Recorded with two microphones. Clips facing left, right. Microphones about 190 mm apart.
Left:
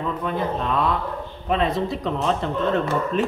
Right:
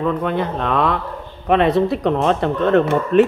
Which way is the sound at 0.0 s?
70° right (ahead or behind).